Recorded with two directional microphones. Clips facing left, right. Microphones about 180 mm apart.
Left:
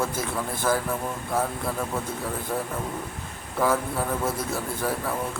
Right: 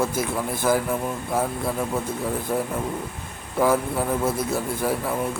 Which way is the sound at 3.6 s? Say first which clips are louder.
Right 3 dB; 10° right (ahead or behind).